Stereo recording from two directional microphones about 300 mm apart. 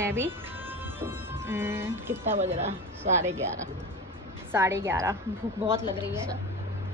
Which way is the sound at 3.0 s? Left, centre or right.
Right.